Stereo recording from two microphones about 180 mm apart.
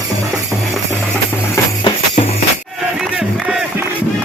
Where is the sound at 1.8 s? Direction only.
35° left (ahead or behind).